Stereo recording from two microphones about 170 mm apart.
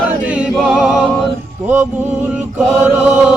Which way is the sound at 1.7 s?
10° right (ahead or behind).